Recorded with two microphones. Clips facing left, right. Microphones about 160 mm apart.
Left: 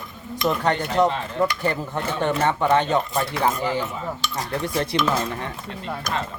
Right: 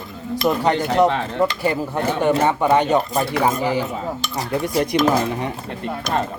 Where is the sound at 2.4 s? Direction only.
10° right (ahead or behind).